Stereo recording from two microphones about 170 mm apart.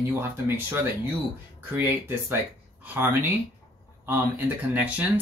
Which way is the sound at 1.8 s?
10° right (ahead or behind).